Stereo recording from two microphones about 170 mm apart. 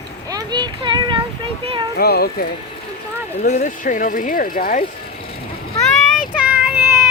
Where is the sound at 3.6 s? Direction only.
50° left (ahead or behind).